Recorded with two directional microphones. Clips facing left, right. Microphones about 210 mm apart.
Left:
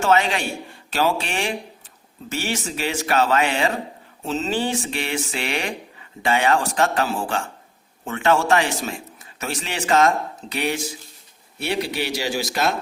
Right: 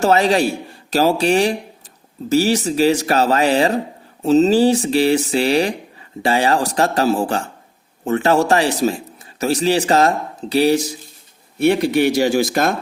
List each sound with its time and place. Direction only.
0.0 s speech: 35° right (ahead or behind)
11.6 s speech: 50° right (ahead or behind)